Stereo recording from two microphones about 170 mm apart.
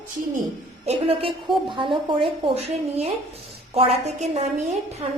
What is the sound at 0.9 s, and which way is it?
A woman's voice, 35° right (ahead or behind).